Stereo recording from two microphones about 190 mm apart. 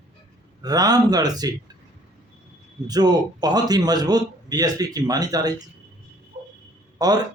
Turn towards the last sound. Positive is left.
turn(degrees=-20)  # may be behind; listen again after turning